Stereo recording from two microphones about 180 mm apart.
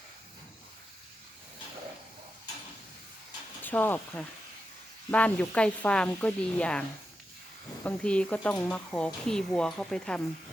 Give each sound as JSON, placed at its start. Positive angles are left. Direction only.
{"t": 3.6, "sound": "speech", "side_deg": 10}
{"t": 7.9, "sound": "speech", "side_deg": 5}